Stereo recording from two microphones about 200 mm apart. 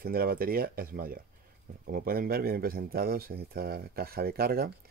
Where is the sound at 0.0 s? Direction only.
50° right (ahead or behind).